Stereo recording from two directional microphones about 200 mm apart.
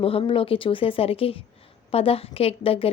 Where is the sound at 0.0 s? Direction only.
30° left (ahead or behind).